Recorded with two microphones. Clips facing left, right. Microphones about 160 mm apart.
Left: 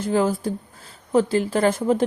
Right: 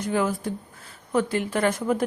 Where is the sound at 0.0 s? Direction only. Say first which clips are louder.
Left 4 dB; 30° left (ahead or behind).